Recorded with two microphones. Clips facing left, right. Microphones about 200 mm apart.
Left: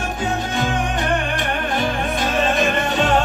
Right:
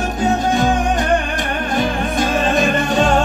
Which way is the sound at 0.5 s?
45° right (ahead or behind).